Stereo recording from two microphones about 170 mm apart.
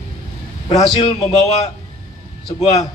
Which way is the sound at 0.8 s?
30° left (ahead or behind).